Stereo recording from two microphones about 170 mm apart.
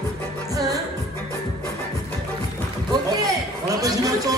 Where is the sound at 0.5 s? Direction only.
20° right (ahead or behind).